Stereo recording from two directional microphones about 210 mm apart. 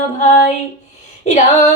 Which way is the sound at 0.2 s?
35° left (ahead or behind).